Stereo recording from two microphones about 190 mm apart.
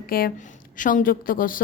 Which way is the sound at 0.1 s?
50° left (ahead or behind).